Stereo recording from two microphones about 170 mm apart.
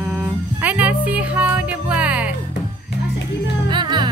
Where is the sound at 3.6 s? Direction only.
25° right (ahead or behind).